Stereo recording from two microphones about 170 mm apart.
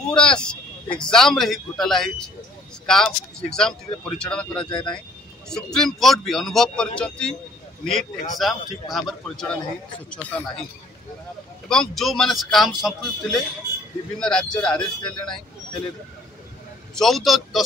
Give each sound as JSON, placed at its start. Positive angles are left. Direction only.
{"t": 0.1, "sound": "a man's voice", "side_deg": 5}
{"t": 4.6, "sound": "speech", "side_deg": 25}
{"t": 5.5, "sound": "a man's voice", "side_deg": 5}
{"t": 11.7, "sound": "a man's voice", "side_deg": 0}
{"t": 16.9, "sound": "a man's voice", "side_deg": 0}